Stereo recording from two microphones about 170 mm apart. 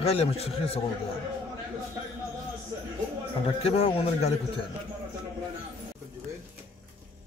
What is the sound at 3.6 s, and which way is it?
Speech, 35° left (ahead or behind).